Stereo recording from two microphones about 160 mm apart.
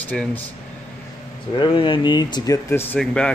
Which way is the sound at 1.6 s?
30° left (ahead or behind).